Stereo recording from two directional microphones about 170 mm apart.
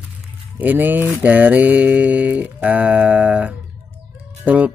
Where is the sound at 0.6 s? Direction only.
10° right (ahead or behind).